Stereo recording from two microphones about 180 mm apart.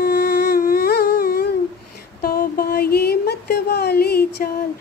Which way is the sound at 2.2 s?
55° left (ahead or behind).